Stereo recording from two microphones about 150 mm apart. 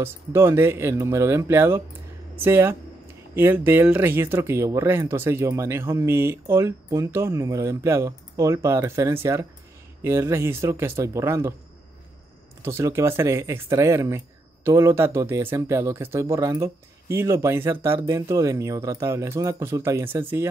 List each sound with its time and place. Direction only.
0.0 s speech: 15° right (ahead or behind)
12.6 s speech: 15° right (ahead or behind)